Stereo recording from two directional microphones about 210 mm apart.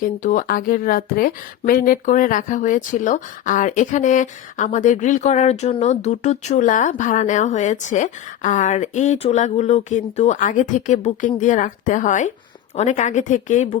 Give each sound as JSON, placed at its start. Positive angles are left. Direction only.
{"t": 0.0, "sound": "speech", "side_deg": 40}